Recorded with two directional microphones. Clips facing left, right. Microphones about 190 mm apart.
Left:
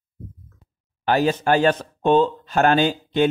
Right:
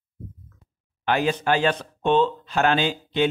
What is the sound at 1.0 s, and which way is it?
Speech, 40° left (ahead or behind).